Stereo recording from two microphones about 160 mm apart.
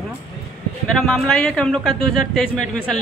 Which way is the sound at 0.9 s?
Centre (ahead or behind).